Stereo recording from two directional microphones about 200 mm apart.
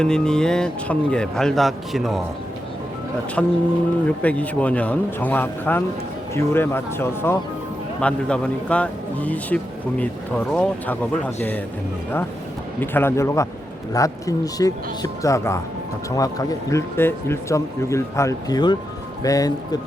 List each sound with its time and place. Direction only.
0.0 s speech: 5° left (ahead or behind)
3.4 s speech: 5° left (ahead or behind)
12.8 s speech: 10° left (ahead or behind)